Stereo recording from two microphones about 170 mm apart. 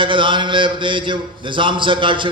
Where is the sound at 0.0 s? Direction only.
30° right (ahead or behind).